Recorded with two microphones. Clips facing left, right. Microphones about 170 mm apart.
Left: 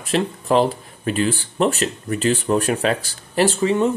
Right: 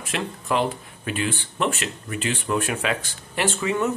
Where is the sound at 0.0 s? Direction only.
35° left (ahead or behind).